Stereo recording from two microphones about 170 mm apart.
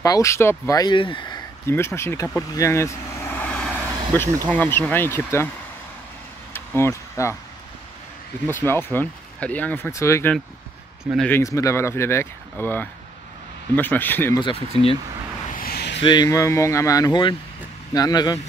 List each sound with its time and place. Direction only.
0.0 s speech: 20° left (ahead or behind)
1.7 s vehicle: 15° left (ahead or behind)
4.5 s speech: 10° left (ahead or behind)
6.5 s a sound: 15° left (ahead or behind)
8.5 s speech: 15° left (ahead or behind)
14.4 s speech: 35° left (ahead or behind)
15.5 s vehicle: 60° left (ahead or behind)
16.0 s speech: 25° left (ahead or behind)